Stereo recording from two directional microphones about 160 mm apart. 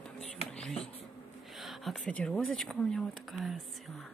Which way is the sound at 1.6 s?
Centre (ahead or behind).